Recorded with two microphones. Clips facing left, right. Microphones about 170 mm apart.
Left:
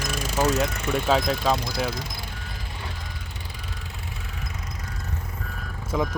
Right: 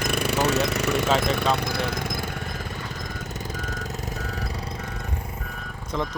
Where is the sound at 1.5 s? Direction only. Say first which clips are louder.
Right 2 dB; 60° right (ahead or behind).